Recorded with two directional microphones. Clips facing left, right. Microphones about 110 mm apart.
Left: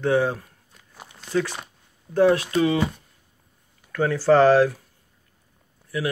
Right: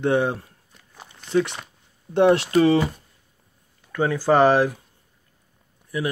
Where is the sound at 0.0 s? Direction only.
20° right (ahead or behind).